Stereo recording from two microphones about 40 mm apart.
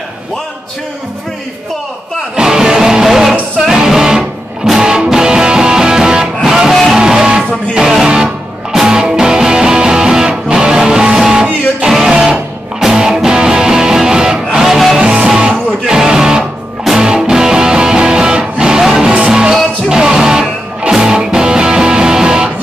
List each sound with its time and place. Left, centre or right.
2.4 s music: centre
6.7 s music: centre
7.0 s music: centre
14.6 s music: centre
15.0 s music: right
18.8 s music: centre
19.0 s music: centre